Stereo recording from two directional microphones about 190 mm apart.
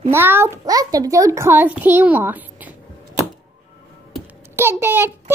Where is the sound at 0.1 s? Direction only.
10° right (ahead or behind).